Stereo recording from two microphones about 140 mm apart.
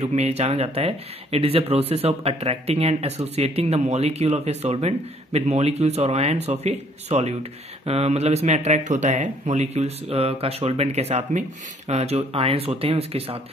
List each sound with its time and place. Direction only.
0.0 s speech: 50° right (ahead or behind)